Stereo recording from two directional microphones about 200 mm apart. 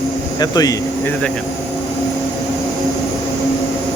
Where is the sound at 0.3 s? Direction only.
20° left (ahead or behind).